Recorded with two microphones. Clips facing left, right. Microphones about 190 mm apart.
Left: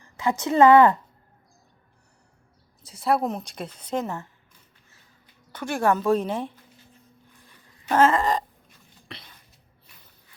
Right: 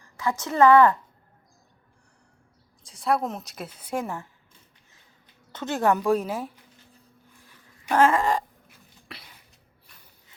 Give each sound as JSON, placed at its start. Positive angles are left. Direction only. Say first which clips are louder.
{"t": 0.2, "sound": "a woman's voice", "louder": "left 2 dB", "side_deg": 20}
{"t": 2.8, "sound": "a woman's voice", "louder": "left 2 dB", "side_deg": 0}
{"t": 5.5, "sound": "a woman's voice", "louder": "even", "side_deg": -20}
{"t": 8.0, "sound": "a woman's voice", "louder": "even", "side_deg": -10}
{"t": 9.1, "sound": "cough", "louder": "left 2 dB", "side_deg": -5}